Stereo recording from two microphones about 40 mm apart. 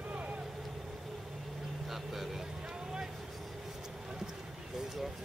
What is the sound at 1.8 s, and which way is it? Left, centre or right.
Vehicle, centre.